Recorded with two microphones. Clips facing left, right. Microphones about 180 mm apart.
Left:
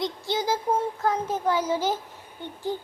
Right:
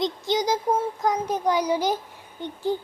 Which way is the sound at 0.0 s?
20° right (ahead or behind).